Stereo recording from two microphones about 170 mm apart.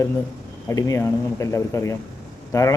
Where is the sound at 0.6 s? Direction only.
15° left (ahead or behind).